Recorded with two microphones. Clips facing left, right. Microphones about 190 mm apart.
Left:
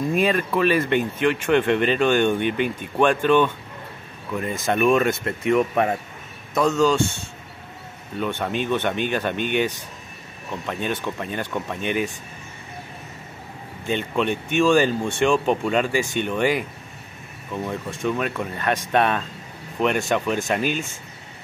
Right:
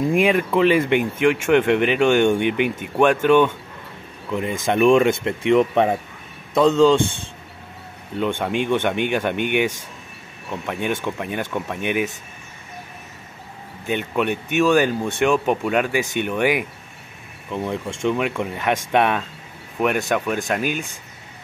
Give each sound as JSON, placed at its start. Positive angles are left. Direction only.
{"t": 0.0, "sound": "a man's voice", "side_deg": -15}
{"t": 8.2, "sound": "speech", "side_deg": -15}
{"t": 13.8, "sound": "speech", "side_deg": -10}